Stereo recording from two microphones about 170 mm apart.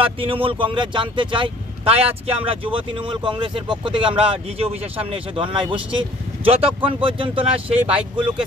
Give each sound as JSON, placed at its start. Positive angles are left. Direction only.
{"t": 0.0, "sound": "speech", "side_deg": -30}